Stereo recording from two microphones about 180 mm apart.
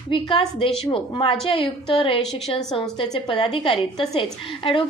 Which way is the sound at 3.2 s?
30° left (ahead or behind).